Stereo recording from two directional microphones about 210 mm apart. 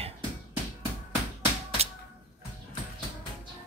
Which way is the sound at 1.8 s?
30° right (ahead or behind).